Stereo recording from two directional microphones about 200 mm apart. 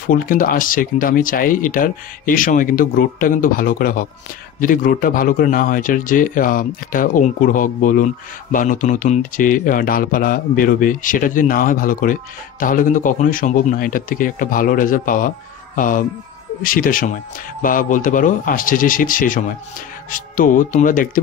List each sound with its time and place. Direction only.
0.0 s a man's voice: 45° left (ahead or behind)